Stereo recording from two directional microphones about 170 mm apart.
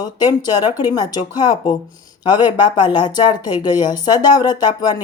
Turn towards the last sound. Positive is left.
turn(degrees=25)  # may be behind; listen again after turning